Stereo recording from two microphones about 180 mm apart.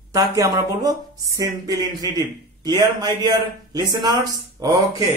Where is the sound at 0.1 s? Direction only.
20° right (ahead or behind).